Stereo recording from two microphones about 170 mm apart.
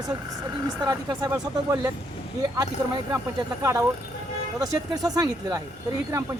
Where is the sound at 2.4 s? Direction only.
25° right (ahead or behind).